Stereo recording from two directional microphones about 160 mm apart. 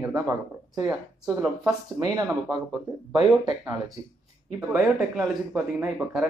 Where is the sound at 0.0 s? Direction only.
20° right (ahead or behind).